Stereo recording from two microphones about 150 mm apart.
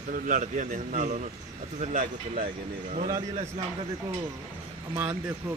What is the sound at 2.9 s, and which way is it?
Speech, 50° right (ahead or behind).